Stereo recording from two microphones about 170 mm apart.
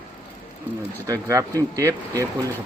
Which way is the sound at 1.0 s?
20° right (ahead or behind).